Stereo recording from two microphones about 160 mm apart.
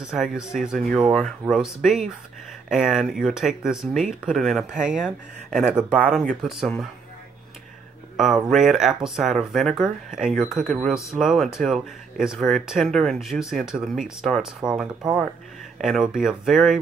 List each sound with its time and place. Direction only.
0.0 s speech: 5° right (ahead or behind)
8.5 s speech: centre (ahead or behind)
15.8 s speech: 5° right (ahead or behind)